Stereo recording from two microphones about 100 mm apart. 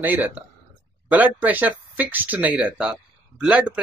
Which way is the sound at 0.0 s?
15° right (ahead or behind).